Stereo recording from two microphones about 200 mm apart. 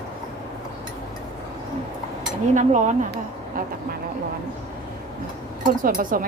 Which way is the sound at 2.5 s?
40° right (ahead or behind).